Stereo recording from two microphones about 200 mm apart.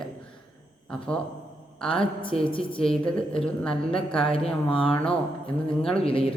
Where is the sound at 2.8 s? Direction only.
5° left (ahead or behind).